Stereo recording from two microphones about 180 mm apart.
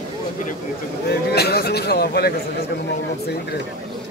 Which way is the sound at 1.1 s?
65° left (ahead or behind).